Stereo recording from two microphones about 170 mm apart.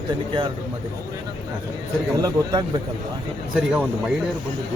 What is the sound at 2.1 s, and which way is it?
Speech, 20° right (ahead or behind).